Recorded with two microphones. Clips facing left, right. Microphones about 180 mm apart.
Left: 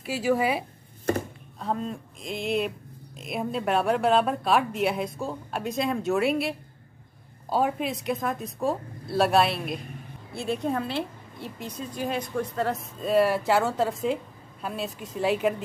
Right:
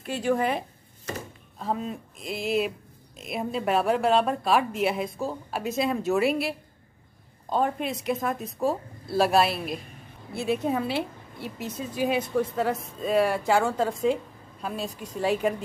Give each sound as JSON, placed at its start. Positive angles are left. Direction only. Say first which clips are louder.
{"t": 0.0, "sound": "a woman's voice", "louder": "left 1 dB", "side_deg": 5}
{"t": 1.1, "sound": "speech", "louder": "left 9 dB", "side_deg": 55}
{"t": 1.6, "sound": "a woman's voice", "louder": "even", "side_deg": -5}